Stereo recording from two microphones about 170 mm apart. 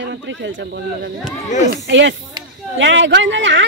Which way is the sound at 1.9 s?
90° right.